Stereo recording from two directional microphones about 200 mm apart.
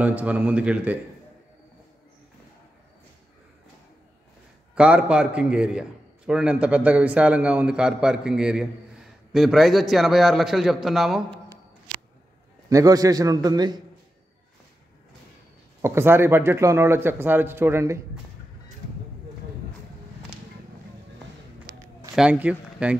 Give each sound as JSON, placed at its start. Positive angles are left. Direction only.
{"t": 0.0, "sound": "speech", "side_deg": -5}
{"t": 4.7, "sound": "a man's voice", "side_deg": -5}
{"t": 12.6, "sound": "a man's voice", "side_deg": -15}
{"t": 15.8, "sound": "speech", "side_deg": -10}
{"t": 22.1, "sound": "speech", "side_deg": -5}